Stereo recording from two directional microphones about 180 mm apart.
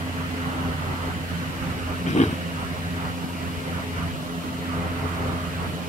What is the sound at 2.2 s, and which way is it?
Dog, 40° left (ahead or behind).